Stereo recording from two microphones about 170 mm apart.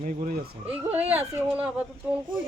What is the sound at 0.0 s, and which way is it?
Speech, 50° right (ahead or behind).